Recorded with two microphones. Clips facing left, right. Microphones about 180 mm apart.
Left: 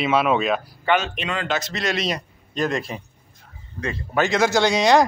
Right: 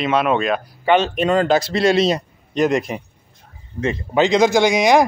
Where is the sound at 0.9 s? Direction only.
40° right (ahead or behind); by 5.0 s 10° right (ahead or behind).